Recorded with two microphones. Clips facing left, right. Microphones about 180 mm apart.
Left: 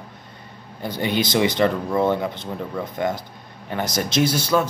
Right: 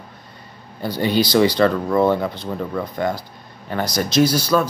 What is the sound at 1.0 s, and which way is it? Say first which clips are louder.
Speech: right 4 dB; 20° left (ahead or behind).